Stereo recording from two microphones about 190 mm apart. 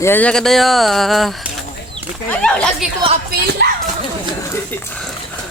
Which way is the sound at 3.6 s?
60° right (ahead or behind).